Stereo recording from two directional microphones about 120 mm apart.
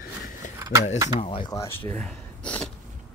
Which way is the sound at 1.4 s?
30° left (ahead or behind).